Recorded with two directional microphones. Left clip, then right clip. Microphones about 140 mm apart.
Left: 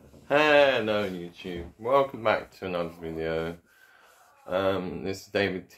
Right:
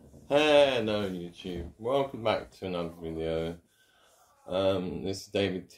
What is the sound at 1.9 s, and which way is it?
Speech, 40° left (ahead or behind).